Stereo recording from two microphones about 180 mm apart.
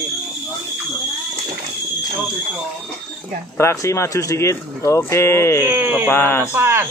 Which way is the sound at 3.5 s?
15° left (ahead or behind).